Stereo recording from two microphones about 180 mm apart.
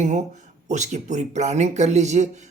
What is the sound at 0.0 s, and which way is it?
Speech, 40° right (ahead or behind).